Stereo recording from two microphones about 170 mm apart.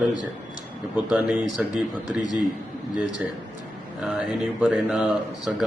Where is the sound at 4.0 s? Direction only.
5° right (ahead or behind).